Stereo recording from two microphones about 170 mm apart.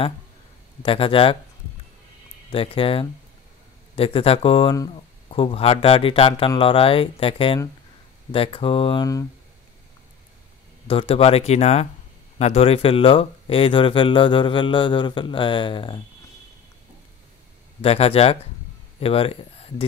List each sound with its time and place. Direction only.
0.8 s speech: 30° left (ahead or behind)
2.5 s speech: 30° left (ahead or behind)
10.9 s speech: 35° left (ahead or behind)
17.8 s speech: 35° left (ahead or behind)